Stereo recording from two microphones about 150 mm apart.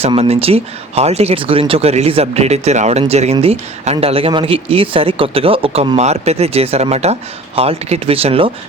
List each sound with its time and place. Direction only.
0.0 s speech: 40° right (ahead or behind)